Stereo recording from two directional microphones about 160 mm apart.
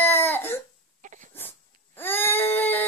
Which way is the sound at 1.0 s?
50° right (ahead or behind).